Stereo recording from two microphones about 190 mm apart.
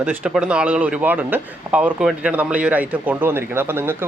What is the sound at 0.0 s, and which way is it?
Speech, 10° right (ahead or behind).